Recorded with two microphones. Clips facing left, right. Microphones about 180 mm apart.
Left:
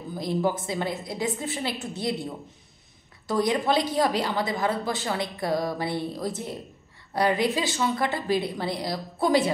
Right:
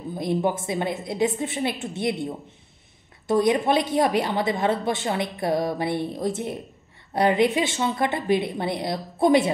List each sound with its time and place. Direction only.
0.1 s a woman's voice: 25° right (ahead or behind)
3.3 s a woman's voice: 20° right (ahead or behind)